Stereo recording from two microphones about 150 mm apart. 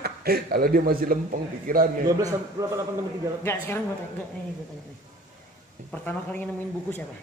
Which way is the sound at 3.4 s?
15° left (ahead or behind).